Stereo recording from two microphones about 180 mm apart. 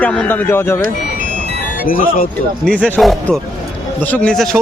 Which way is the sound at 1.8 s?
50° left (ahead or behind).